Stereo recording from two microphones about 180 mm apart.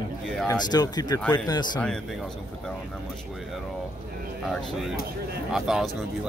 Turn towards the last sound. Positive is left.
turn(degrees=0)  # may be behind; listen again after turning